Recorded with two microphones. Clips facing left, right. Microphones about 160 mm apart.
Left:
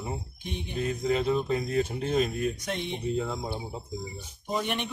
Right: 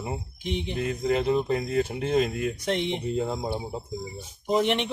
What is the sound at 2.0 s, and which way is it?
Speech, 90° right.